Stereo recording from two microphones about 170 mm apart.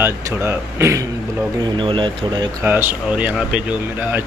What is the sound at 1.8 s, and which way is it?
Speech, 30° right (ahead or behind).